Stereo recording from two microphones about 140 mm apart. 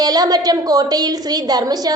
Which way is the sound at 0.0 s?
25° right (ahead or behind).